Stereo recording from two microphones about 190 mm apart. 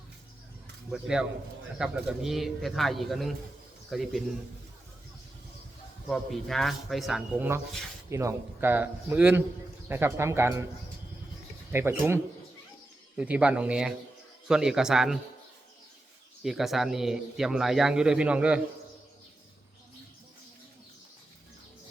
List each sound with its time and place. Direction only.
0.9 s a man's voice: 5° right (ahead or behind)
6.1 s a man's voice: centre (ahead or behind)
11.7 s a man's voice: 10° right (ahead or behind)
16.4 s a man's voice: centre (ahead or behind)